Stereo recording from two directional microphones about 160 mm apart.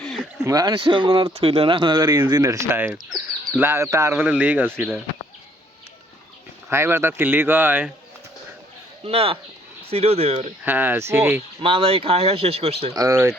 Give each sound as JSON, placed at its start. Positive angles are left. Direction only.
{"t": 0.0, "sound": "a sound", "side_deg": 5}
{"t": 0.4, "sound": "speech", "side_deg": -25}
{"t": 6.7, "sound": "speech", "side_deg": -15}
{"t": 9.0, "sound": "speech", "side_deg": -40}
{"t": 10.6, "sound": "speech", "side_deg": -10}
{"t": 11.6, "sound": "speech", "side_deg": -35}
{"t": 12.9, "sound": "speech", "side_deg": -20}